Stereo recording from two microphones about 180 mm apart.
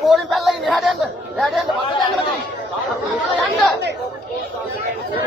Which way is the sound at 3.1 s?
Centre (ahead or behind).